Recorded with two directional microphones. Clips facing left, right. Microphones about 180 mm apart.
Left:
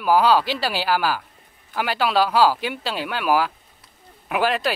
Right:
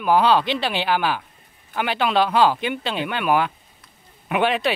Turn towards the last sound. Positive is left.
turn(degrees=0)  # may be behind; listen again after turning